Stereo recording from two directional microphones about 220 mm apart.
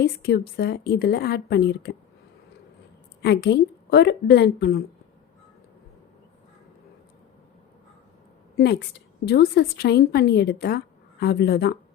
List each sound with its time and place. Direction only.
0.0 s a woman's voice: 45° left (ahead or behind)
3.2 s a woman's voice: 50° left (ahead or behind)
8.5 s a woman's voice: 50° left (ahead or behind)